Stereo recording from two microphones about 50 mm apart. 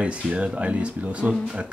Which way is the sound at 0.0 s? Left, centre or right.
Right.